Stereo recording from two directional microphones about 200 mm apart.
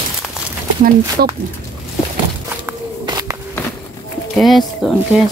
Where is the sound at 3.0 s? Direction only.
20° right (ahead or behind).